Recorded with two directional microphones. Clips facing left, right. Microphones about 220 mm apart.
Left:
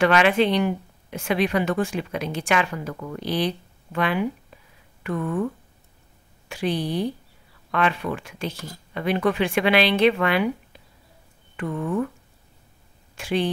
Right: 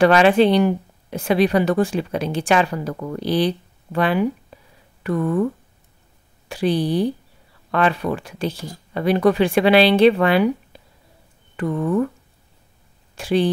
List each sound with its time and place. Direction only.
0.0 s speech: 35° right (ahead or behind)
4.5 s a sound: 35° right (ahead or behind)
5.0 s speech: 35° right (ahead or behind)
6.5 s speech: 35° right (ahead or behind)
13.1 s speech: 35° right (ahead or behind)